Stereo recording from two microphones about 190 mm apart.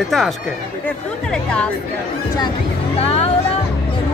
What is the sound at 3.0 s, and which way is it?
Vehicle, 30° left (ahead or behind).